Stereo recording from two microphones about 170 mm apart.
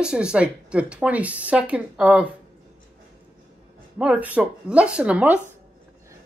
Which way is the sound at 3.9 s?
10° right (ahead or behind).